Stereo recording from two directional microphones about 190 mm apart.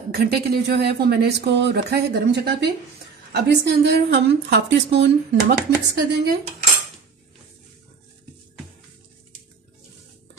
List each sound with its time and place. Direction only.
0.1 s a woman's voice: 55° right (ahead or behind)